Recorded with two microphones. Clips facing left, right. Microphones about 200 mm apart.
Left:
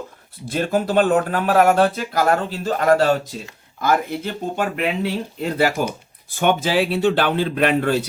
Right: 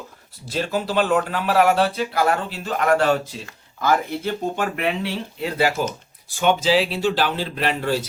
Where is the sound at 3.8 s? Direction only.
50° left (ahead or behind).